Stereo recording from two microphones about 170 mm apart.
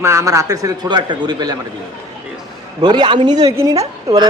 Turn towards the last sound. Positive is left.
turn(degrees=-20)  # may be behind; listen again after turning